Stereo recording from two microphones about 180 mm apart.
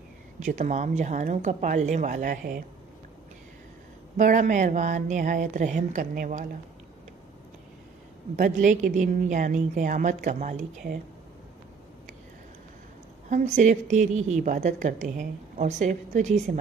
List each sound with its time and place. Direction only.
0.4 s a woman's voice: 40° right (ahead or behind)
4.2 s speech: 45° right (ahead or behind)
8.4 s speech: 45° right (ahead or behind)
13.3 s a woman's voice: 40° right (ahead or behind)